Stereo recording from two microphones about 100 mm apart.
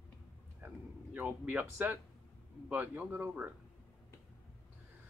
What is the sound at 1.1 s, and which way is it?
Speech, 15° right (ahead or behind).